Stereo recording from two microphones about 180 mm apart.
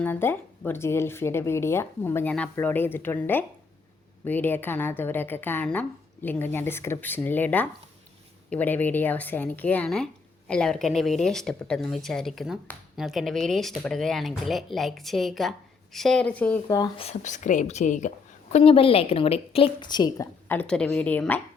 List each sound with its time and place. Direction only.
0.0 s speech: 10° left (ahead or behind)
16.6 s speech: 20° left (ahead or behind)
17.0 s a woman's voice: 40° left (ahead or behind)
18.5 s a woman's voice: 30° left (ahead or behind)
20.5 s speech: 5° left (ahead or behind)